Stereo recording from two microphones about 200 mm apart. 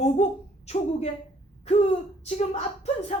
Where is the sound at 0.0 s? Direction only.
30° left (ahead or behind).